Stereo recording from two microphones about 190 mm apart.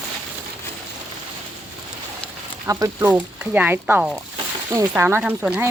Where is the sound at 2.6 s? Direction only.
15° right (ahead or behind).